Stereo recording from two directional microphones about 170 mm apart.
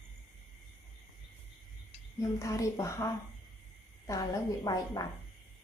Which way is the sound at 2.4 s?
20° left (ahead or behind).